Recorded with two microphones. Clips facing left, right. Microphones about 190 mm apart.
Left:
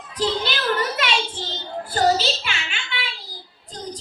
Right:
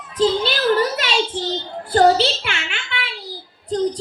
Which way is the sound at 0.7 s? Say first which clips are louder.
Right 5 dB; 35° right (ahead or behind).